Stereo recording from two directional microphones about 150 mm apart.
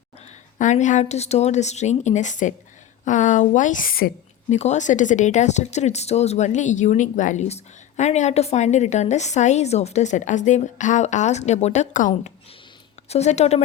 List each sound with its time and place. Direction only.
0.6 s a woman's voice: 55° left (ahead or behind); by 4.1 s 70° left (ahead or behind)
4.4 s speech: 50° left (ahead or behind)